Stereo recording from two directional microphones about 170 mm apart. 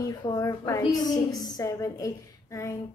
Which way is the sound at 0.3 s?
20° left (ahead or behind).